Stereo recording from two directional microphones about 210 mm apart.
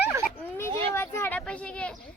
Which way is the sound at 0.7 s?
25° right (ahead or behind).